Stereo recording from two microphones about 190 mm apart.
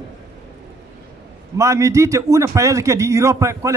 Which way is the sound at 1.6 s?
15° right (ahead or behind).